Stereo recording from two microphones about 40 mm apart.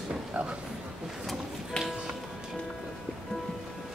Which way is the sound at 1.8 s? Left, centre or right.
Centre.